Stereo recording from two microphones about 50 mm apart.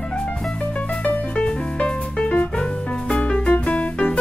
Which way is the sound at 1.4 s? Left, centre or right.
Centre.